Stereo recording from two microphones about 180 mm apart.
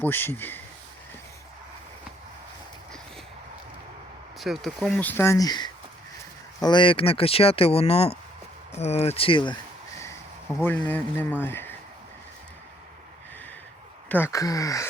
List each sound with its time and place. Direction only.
0.0 s speech: 10° left (ahead or behind)
4.4 s speech: centre (ahead or behind); by 9.6 s 25° left (ahead or behind)
10.6 s speech: 10° left (ahead or behind)
14.1 s speech: 15° left (ahead or behind)